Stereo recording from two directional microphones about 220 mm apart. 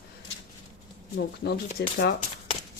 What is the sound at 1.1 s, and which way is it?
Speech, 45° left (ahead or behind).